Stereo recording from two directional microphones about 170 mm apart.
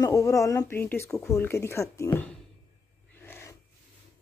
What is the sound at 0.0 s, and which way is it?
Speech, 20° left (ahead or behind).